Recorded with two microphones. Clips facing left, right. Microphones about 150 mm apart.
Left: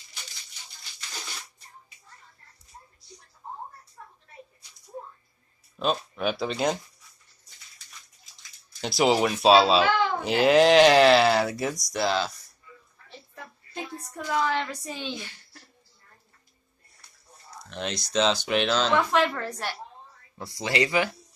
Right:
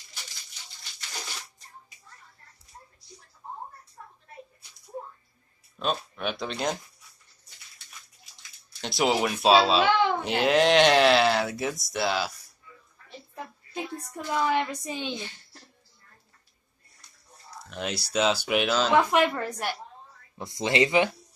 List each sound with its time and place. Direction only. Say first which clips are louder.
5.8 s a child's voice: left 3 dB; centre (ahead or behind)
8.4 s a child's voice: left 4 dB; centre (ahead or behind)
14.1 s a woman's voice: right 1 dB; 15° right (ahead or behind)
17.6 s a woman's voice: even; 5° right (ahead or behind); by 21.1 s 25° right (ahead or behind)